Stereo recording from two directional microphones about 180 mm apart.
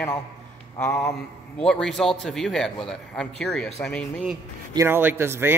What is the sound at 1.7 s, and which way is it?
A man's voice, centre (ahead or behind).